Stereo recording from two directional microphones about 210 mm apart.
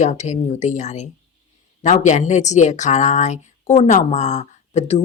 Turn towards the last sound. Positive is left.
turn(degrees=30)  # may be behind; listen again after turning